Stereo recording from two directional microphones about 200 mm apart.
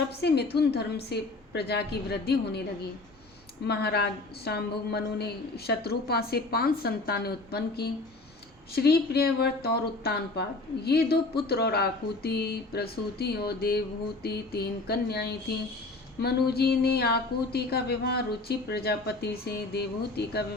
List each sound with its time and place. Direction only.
0.2 s a woman's voice: 55° left (ahead or behind)
3.7 s speech: 55° left (ahead or behind)